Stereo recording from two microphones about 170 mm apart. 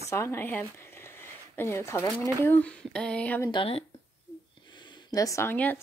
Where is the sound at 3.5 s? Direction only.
30° left (ahead or behind).